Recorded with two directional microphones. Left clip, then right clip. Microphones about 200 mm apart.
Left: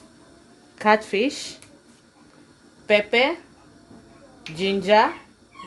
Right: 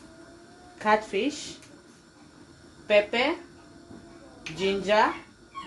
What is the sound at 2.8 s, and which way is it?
Speech, 60° left (ahead or behind).